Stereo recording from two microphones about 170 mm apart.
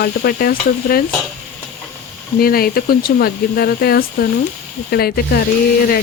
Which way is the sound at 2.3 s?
60° left (ahead or behind).